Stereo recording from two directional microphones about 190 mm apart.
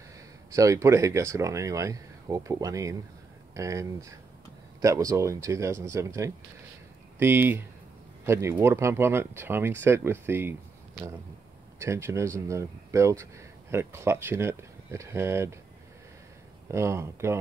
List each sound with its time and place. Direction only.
0.5 s speech: 15° right (ahead or behind)
11.8 s speech: 15° right (ahead or behind)
16.6 s speech: 15° right (ahead or behind)